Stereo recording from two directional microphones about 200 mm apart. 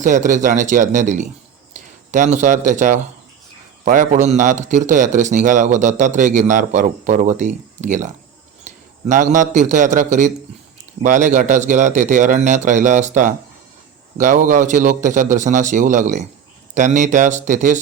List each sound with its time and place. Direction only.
0.0 s a man's voice: 40° right (ahead or behind)